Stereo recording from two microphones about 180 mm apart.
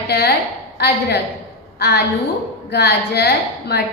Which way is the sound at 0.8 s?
65° left (ahead or behind).